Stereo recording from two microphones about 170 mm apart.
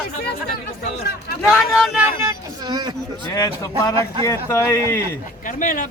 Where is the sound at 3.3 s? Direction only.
20° left (ahead or behind).